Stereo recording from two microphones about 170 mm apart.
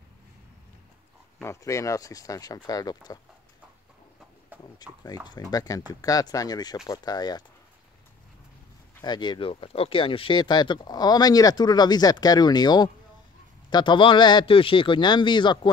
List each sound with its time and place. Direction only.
1.4 s speech: 15° left (ahead or behind)
5.0 s speech: 25° left (ahead or behind)
9.0 s speech: 25° left (ahead or behind)